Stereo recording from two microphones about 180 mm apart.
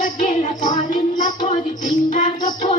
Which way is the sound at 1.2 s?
40° left (ahead or behind).